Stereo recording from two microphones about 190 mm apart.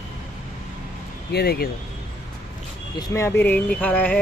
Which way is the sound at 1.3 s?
55° left (ahead or behind).